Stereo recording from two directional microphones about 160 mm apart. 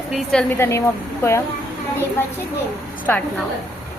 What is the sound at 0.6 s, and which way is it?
Child singing, 15° left (ahead or behind).